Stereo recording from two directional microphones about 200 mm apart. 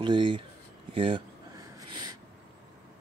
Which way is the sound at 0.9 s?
25° right (ahead or behind).